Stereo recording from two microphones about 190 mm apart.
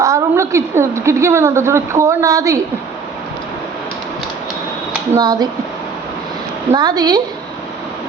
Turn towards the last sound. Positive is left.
turn(degrees=-20)  # may be behind; listen again after turning